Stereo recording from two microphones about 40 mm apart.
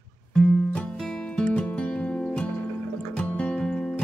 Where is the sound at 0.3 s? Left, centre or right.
Centre.